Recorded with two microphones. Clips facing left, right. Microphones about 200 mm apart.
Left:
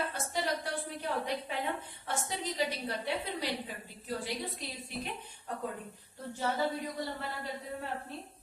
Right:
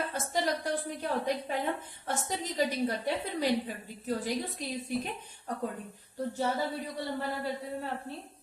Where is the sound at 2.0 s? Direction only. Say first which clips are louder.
Right 2 dB; 45° right (ahead or behind).